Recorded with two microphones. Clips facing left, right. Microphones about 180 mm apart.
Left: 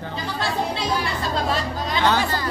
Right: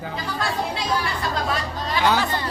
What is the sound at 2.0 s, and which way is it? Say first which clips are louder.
Speech: even; 15° right (ahead or behind).